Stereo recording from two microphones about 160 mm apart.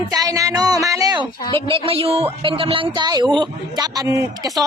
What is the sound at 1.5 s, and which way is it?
A woman's voice, 35° right (ahead or behind).